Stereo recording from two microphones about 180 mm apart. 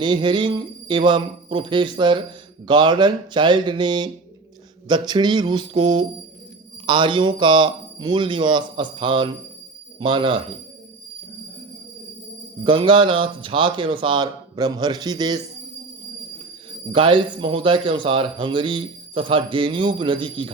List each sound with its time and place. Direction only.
0.0 s a man's voice: 25° right (ahead or behind)
12.6 s a man's voice: 30° right (ahead or behind)
16.9 s a man's voice: 30° right (ahead or behind)